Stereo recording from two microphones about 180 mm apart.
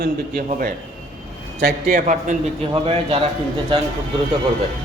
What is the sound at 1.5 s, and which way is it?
Speech, 55° right (ahead or behind).